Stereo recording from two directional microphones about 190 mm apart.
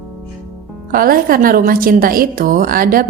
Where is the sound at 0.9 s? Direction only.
50° right (ahead or behind).